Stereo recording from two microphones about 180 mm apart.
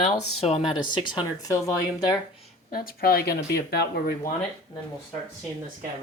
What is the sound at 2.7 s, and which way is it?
Speech, 55° left (ahead or behind).